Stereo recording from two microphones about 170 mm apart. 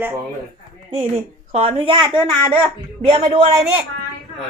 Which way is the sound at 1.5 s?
35° right (ahead or behind).